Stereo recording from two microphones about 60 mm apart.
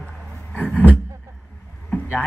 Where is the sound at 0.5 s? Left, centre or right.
Left.